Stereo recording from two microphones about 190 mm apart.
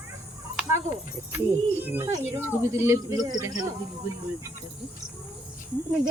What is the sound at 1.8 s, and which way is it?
Speech, 10° right (ahead or behind).